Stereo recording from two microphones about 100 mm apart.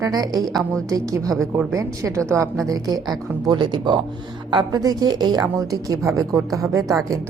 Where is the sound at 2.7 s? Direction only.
40° right (ahead or behind).